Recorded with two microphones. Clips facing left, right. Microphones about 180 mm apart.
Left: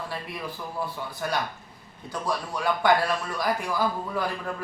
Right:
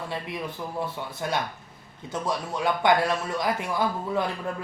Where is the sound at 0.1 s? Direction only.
25° right (ahead or behind).